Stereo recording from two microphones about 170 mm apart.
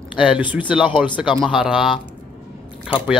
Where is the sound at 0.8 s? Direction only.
30° left (ahead or behind).